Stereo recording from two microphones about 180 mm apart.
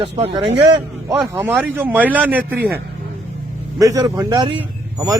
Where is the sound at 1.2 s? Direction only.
15° right (ahead or behind).